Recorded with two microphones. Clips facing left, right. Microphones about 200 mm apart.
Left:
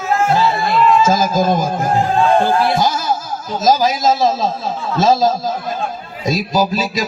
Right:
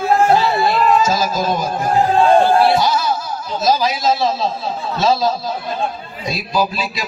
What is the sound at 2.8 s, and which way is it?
A man's voice, 45° left (ahead or behind).